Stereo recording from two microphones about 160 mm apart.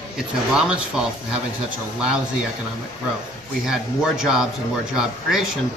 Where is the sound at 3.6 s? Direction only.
5° right (ahead or behind).